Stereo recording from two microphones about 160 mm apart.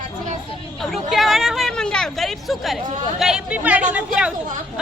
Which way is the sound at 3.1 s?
5° right (ahead or behind).